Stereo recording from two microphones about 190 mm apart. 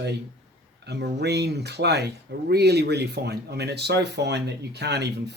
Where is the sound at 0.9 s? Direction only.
60° right (ahead or behind).